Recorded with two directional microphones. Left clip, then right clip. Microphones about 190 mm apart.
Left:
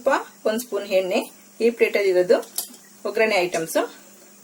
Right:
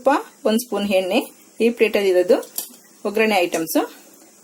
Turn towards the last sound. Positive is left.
turn(degrees=-45)  # may be behind; listen again after turning